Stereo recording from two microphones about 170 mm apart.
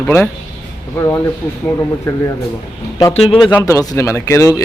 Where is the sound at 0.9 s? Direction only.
15° left (ahead or behind).